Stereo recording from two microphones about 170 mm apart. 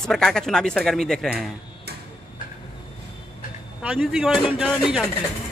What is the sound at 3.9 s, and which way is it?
Speech, centre (ahead or behind).